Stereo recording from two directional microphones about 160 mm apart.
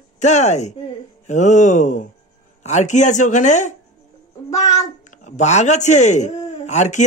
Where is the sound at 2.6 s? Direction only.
45° left (ahead or behind).